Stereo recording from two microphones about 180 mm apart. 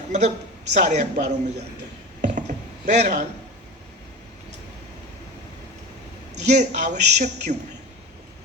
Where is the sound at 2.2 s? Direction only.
40° right (ahead or behind).